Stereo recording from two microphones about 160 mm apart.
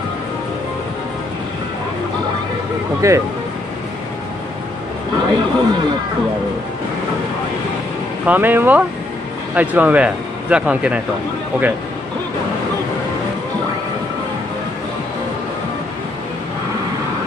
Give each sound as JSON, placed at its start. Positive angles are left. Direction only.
{"t": 3.0, "sound": "speech", "side_deg": -20}
{"t": 5.2, "sound": "a sound", "side_deg": -30}
{"t": 8.3, "sound": "speech", "side_deg": -10}